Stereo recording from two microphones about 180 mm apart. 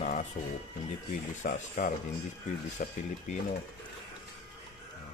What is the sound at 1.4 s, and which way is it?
Speech, 50° left (ahead or behind).